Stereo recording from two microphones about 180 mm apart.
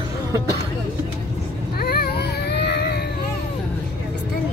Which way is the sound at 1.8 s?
60° left (ahead or behind).